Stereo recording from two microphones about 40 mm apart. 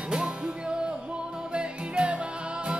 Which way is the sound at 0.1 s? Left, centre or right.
Right.